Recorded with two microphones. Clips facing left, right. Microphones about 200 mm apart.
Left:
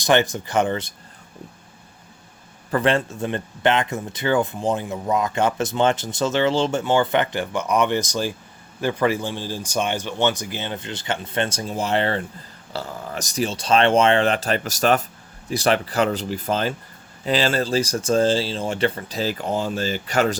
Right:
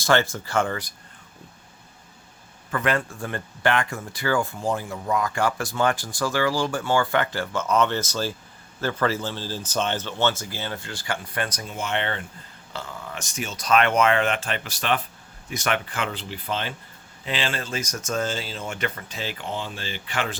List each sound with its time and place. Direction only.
0.0 s speech: 20° left (ahead or behind)
2.6 s speech: 30° left (ahead or behind)